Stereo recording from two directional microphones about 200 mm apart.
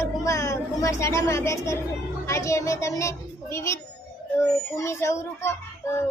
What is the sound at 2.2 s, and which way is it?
A child's voice, 15° left (ahead or behind).